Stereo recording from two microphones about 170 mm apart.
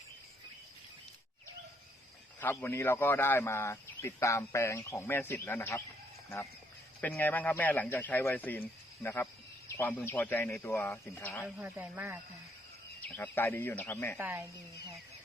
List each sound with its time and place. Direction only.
2.4 s speech: 10° left (ahead or behind)
7.0 s speech: 10° left (ahead or behind)
9.6 s speech: 10° left (ahead or behind)
11.4 s speech: 10° right (ahead or behind)
13.0 s speech: 10° left (ahead or behind)
14.2 s speech: 15° right (ahead or behind)